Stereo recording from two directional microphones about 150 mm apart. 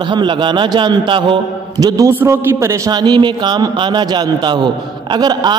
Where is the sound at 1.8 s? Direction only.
25° right (ahead or behind).